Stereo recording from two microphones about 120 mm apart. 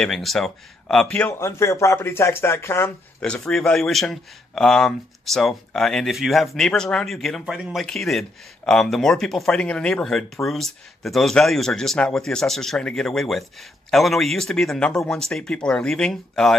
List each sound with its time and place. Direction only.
0.0 s speech: centre (ahead or behind)
1.4 s speech: 25° left (ahead or behind)
3.4 s speech: 5° left (ahead or behind)